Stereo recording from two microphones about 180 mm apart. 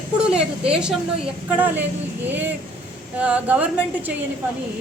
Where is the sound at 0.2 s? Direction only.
5° right (ahead or behind).